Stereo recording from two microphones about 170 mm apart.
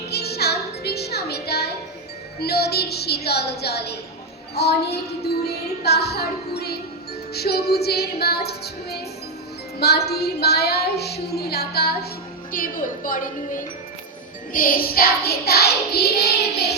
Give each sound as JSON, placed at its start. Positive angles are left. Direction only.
{"t": 0.1, "sound": "music", "side_deg": 70}
{"t": 2.4, "sound": "child singing", "side_deg": 70}
{"t": 12.5, "sound": "a woman's voice", "side_deg": 55}
{"t": 14.5, "sound": "child singing", "side_deg": 55}